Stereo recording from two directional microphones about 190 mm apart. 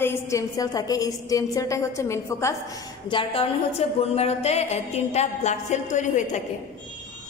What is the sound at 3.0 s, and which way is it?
A woman's voice, 25° left (ahead or behind).